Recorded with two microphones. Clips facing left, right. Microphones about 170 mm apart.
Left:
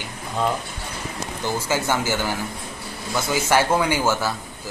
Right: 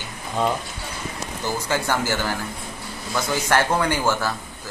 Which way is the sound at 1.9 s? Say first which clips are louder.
Left 1 dB; 15° left (ahead or behind).